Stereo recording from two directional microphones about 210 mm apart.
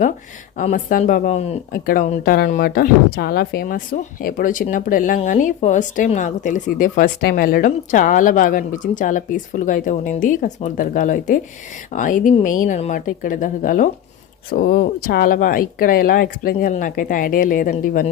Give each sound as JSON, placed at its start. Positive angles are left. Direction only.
{"t": 0.5, "sound": "speech", "side_deg": 40}
{"t": 1.9, "sound": "speech", "side_deg": 45}